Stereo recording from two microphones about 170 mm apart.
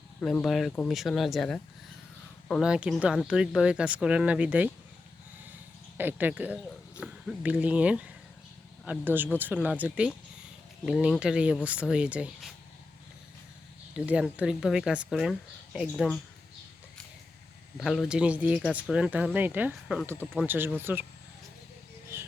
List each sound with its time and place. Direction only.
0.2 s speech: 5° left (ahead or behind)
6.0 s speech: 10° right (ahead or behind)
13.9 s speech: 5° right (ahead or behind)
17.7 s speech: centre (ahead or behind)
22.1 s a sound: 15° right (ahead or behind)